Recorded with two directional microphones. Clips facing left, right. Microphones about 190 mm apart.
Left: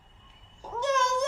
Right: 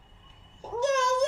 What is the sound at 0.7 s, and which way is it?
Meow, 40° right (ahead or behind).